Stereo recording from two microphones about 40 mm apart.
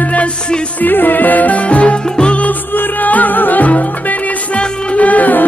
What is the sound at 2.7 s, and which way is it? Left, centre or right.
Music, left.